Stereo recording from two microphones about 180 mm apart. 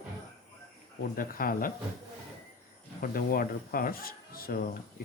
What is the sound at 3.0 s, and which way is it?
Speech, 55° left (ahead or behind).